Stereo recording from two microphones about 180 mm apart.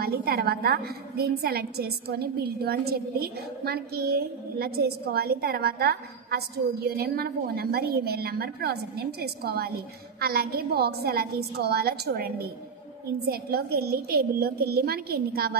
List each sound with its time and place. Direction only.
0.0 s a woman's voice: 60° right (ahead or behind)